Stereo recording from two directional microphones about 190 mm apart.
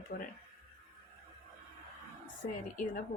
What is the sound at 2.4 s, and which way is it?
Speech, 40° left (ahead or behind).